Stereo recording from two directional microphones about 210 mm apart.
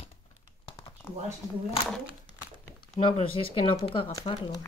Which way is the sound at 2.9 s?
30° left (ahead or behind).